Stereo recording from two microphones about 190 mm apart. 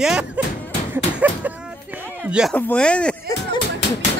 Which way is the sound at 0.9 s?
10° right (ahead or behind).